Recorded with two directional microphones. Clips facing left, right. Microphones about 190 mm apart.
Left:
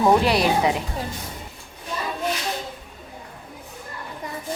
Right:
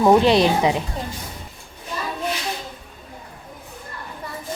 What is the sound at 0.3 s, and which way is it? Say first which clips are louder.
Speech: right 3 dB; 20° right (ahead or behind).